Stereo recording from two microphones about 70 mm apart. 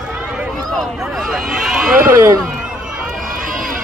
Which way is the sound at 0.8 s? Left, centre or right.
Centre.